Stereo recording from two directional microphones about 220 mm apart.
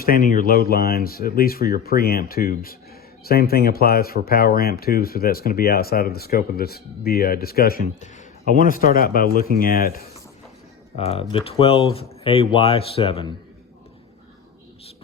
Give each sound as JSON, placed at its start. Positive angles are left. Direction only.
{"t": 0.0, "sound": "speech", "side_deg": 40}
{"t": 10.9, "sound": "speech", "side_deg": 25}